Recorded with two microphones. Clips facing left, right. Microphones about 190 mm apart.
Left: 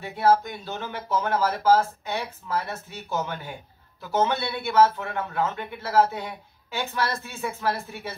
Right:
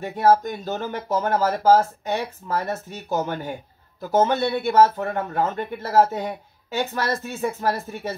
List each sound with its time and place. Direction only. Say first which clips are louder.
0.0 s speech: right 3 dB; 45° right (ahead or behind)